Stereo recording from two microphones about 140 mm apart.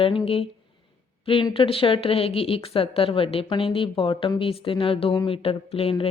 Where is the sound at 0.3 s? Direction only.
40° left (ahead or behind).